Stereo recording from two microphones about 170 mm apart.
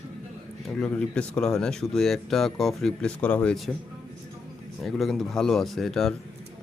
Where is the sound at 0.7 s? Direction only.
5° left (ahead or behind).